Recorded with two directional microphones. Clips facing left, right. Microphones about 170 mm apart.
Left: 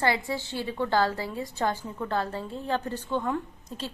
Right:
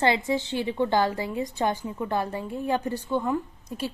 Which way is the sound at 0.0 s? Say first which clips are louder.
Right 4 dB; 20° right (ahead or behind).